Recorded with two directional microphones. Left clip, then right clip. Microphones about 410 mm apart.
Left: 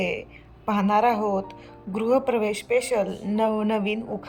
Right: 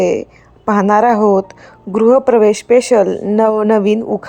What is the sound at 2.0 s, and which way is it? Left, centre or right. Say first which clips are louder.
Speech: right 13 dB; right.